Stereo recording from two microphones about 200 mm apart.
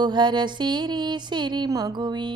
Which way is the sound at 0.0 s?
20° right (ahead or behind).